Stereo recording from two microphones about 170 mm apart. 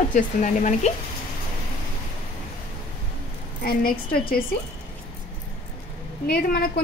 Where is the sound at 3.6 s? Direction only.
60° left (ahead or behind).